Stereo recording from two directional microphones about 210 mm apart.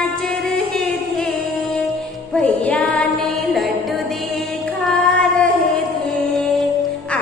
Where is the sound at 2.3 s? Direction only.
5° left (ahead or behind).